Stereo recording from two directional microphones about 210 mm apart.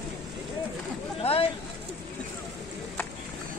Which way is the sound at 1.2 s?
25° left (ahead or behind).